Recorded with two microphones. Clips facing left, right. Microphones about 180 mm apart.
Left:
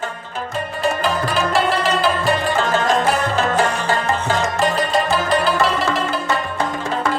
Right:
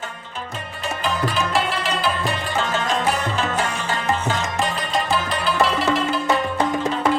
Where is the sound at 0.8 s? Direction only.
40° left (ahead or behind).